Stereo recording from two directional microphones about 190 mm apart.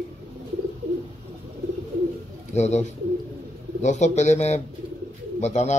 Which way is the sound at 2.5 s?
35° left (ahead or behind).